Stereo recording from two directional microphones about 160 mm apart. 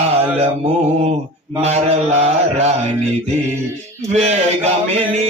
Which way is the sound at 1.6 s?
40° right (ahead or behind).